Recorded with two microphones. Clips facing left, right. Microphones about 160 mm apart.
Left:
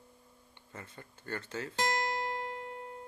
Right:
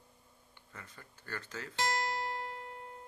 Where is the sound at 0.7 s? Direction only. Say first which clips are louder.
Left 5 dB; 25° left (ahead or behind).